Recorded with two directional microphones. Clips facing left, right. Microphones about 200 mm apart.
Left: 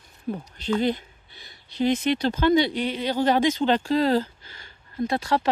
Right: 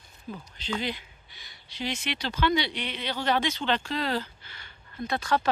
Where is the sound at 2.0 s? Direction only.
45° left (ahead or behind).